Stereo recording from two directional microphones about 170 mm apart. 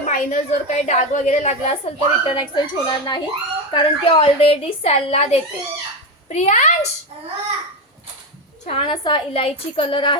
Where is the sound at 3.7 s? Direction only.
30° left (ahead or behind).